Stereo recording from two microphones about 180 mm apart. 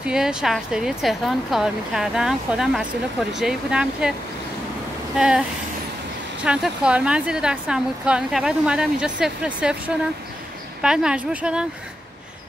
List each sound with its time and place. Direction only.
0.0 s speech: 5° right (ahead or behind)
5.1 s speech: 5° right (ahead or behind)
6.4 s speech: 5° right (ahead or behind)